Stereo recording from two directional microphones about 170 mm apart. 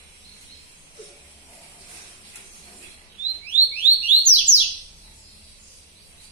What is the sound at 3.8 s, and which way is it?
Alarm, 10° right (ahead or behind).